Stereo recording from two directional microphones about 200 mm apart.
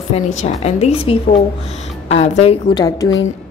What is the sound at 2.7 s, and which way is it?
Speech, 20° left (ahead or behind).